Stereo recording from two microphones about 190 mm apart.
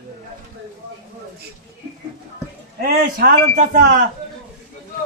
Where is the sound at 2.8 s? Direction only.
45° right (ahead or behind).